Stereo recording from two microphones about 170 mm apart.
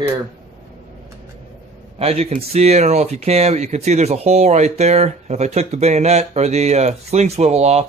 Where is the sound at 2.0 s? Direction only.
35° right (ahead or behind).